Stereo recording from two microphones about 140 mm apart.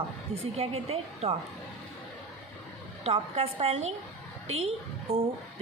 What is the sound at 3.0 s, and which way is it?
A woman's voice, 45° right (ahead or behind).